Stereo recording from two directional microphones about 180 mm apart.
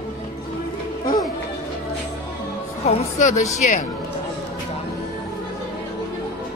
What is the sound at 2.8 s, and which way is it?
Speech, 40° left (ahead or behind).